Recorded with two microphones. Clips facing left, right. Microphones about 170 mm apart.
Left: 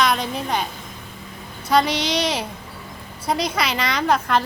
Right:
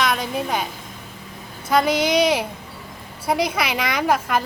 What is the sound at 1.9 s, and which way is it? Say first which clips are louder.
Speech: right 4 dB; 55° right (ahead or behind).